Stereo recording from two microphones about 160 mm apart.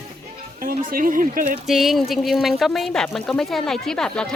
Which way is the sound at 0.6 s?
60° right (ahead or behind).